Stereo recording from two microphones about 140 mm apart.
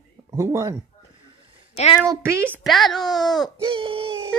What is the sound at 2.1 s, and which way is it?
Speech, 20° right (ahead or behind).